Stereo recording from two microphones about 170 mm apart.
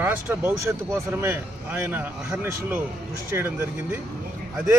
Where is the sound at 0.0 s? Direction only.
15° right (ahead or behind).